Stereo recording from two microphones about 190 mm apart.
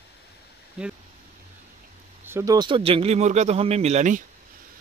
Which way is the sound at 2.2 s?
15° right (ahead or behind).